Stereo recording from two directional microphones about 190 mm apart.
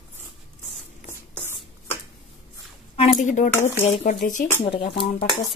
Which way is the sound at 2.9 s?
40° left (ahead or behind).